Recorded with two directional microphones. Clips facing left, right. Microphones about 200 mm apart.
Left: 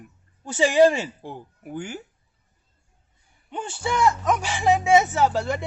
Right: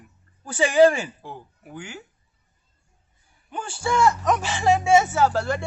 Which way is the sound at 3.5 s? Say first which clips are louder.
Right 2 dB; 20° left (ahead or behind).